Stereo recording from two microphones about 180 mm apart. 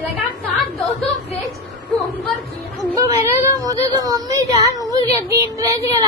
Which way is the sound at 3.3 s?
20° right (ahead or behind).